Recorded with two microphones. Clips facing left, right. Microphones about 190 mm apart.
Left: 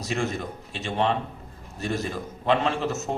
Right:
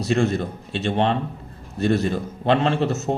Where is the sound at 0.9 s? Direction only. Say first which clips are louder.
Right 4 dB; 35° right (ahead or behind).